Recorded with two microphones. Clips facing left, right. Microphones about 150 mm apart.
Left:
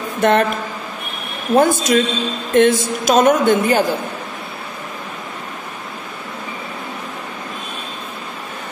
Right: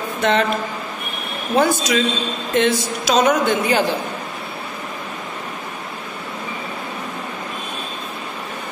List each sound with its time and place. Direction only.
0.2 s speech: 50° left (ahead or behind)
1.6 s a woman's voice: 50° left (ahead or behind)